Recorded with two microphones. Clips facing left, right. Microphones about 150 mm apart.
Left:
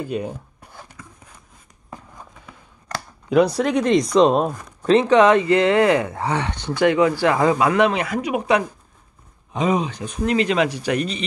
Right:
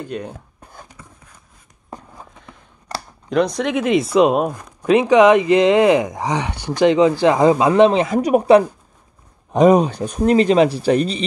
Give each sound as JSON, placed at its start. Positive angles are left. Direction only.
{"t": 0.0, "sound": "speech", "side_deg": 5}
{"t": 3.3, "sound": "speech", "side_deg": 5}
{"t": 8.2, "sound": "speech", "side_deg": -40}